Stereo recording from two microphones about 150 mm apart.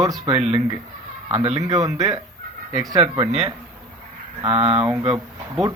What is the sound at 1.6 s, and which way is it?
A man's voice, 25° right (ahead or behind).